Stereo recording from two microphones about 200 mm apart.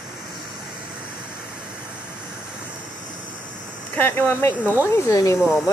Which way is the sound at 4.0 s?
10° left (ahead or behind).